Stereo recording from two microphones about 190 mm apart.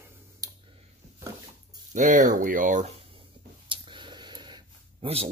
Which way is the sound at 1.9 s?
40° right (ahead or behind).